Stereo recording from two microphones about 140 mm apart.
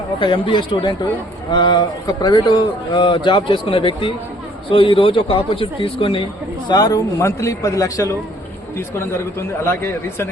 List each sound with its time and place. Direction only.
0.2 s a man's voice: 35° left (ahead or behind)
6.7 s a man's voice: 25° left (ahead or behind)
9.6 s a man's voice: 15° left (ahead or behind)